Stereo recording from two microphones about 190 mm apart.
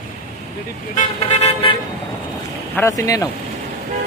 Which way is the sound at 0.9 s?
35° left (ahead or behind).